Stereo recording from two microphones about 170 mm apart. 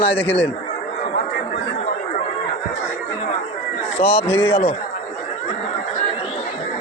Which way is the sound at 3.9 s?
35° left (ahead or behind).